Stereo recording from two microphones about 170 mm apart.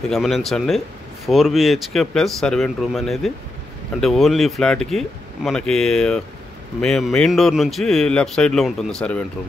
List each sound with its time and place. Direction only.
0.1 s speech: centre (ahead or behind)